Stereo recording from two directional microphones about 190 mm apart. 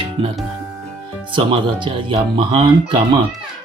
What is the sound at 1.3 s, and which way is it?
Speech, 25° right (ahead or behind).